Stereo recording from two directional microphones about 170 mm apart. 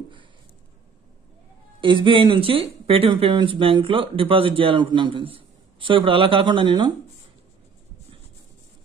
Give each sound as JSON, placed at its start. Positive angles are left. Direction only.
{"t": 1.8, "sound": "speech", "side_deg": -30}